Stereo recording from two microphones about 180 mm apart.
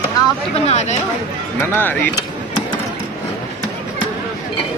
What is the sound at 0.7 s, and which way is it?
Speech, 40° left (ahead or behind).